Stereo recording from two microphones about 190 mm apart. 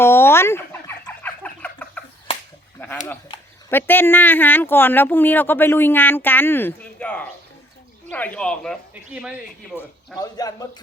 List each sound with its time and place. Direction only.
0.0 s fowl: 15° left (ahead or behind)
3.7 s speech: 10° left (ahead or behind)
10.2 s a man's voice: 20° left (ahead or behind)